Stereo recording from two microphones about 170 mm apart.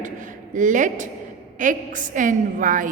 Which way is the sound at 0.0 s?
50° right (ahead or behind).